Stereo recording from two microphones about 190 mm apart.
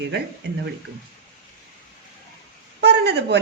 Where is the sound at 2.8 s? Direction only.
60° right (ahead or behind).